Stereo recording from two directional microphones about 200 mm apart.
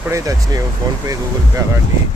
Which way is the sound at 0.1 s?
15° right (ahead or behind).